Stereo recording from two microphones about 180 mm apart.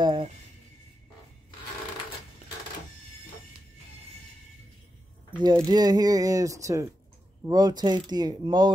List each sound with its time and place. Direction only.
0.0 s speech: 25° right (ahead or behind)
5.3 s speech: 25° right (ahead or behind)